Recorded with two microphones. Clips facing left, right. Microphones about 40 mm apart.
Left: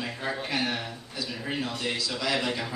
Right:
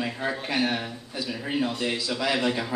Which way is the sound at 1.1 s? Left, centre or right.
Right.